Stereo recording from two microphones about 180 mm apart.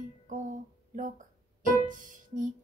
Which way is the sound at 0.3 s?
45° right (ahead or behind).